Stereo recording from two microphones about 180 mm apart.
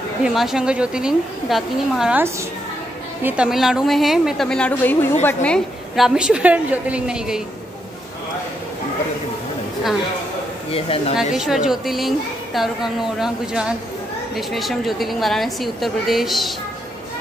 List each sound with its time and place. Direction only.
0.2 s a woman's voice: centre (ahead or behind)
10.7 s speech: 30° left (ahead or behind)
11.3 s a woman's voice: 5° right (ahead or behind)